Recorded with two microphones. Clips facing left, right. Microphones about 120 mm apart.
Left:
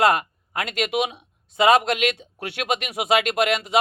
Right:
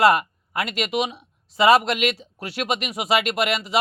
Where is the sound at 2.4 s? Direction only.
60° left (ahead or behind).